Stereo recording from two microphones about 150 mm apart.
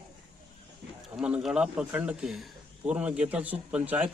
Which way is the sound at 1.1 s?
5° right (ahead or behind).